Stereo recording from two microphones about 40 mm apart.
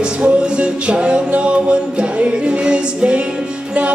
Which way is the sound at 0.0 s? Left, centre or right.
Right.